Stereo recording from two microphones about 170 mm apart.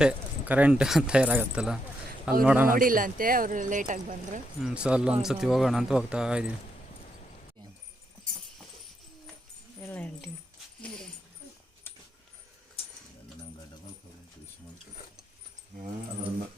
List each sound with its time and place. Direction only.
0.0 s a man's voice: 10° right (ahead or behind)
2.7 s speech: 55° right (ahead or behind)
4.6 s speech: 5° right (ahead or behind)
9.8 s a sound: 10° left (ahead or behind)
10.8 s dog: 5° left (ahead or behind)